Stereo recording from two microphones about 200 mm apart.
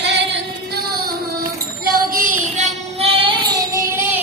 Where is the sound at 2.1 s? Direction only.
40° right (ahead or behind).